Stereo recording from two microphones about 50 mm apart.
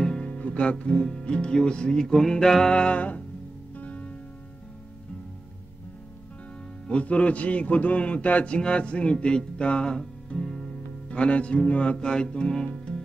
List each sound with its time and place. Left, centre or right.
0.0 s guitar: centre
0.3 s speech: left; by 2.7 s centre
2.7 s a man's voice: left
3.7 s music: left
6.9 s a man's voice: left
8.5 s music: left
11.1 s a man's voice: left
12.0 s music: centre